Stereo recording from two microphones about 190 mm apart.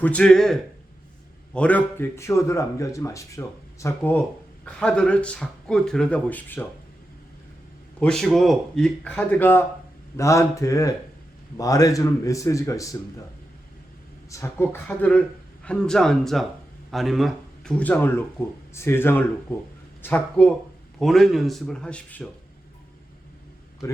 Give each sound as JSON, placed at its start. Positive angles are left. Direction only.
{"t": 0.0, "sound": "a man's voice", "side_deg": 5}
{"t": 7.9, "sound": "a man's voice", "side_deg": 5}
{"t": 14.3, "sound": "a man's voice", "side_deg": 15}